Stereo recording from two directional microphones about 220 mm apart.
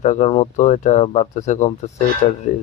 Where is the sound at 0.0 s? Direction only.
30° left (ahead or behind).